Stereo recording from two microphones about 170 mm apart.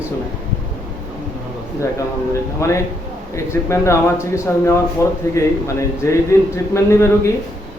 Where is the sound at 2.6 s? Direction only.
15° left (ahead or behind).